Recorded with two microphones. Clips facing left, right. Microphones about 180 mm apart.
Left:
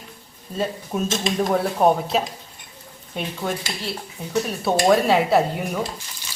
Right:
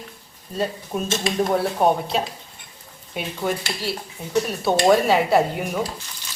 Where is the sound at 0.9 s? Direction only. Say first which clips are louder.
Even; centre (ahead or behind).